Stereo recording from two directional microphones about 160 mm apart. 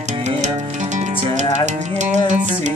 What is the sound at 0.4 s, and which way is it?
Music, 45° right (ahead or behind).